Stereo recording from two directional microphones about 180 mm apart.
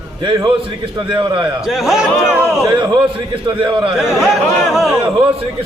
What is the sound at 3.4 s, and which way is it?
Speech, 25° right (ahead or behind).